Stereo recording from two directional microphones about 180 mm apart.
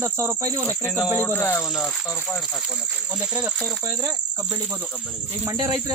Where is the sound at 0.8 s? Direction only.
5° right (ahead or behind).